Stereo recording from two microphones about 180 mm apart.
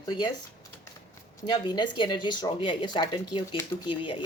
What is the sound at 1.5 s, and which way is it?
Speech, 25° left (ahead or behind).